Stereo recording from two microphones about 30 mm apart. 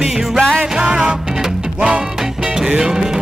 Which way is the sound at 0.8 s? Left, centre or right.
Right.